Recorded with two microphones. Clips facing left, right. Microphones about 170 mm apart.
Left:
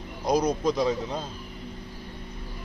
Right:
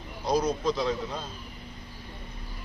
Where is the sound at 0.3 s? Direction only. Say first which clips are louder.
Left 2 dB; 15° left (ahead or behind).